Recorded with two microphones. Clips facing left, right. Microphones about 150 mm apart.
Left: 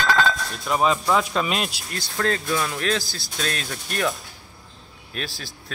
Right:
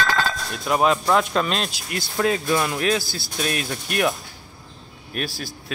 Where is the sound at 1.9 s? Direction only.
10° right (ahead or behind).